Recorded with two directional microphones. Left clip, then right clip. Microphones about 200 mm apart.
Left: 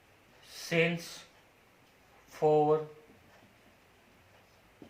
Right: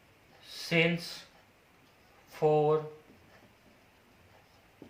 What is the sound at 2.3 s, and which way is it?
Speech, 20° right (ahead or behind).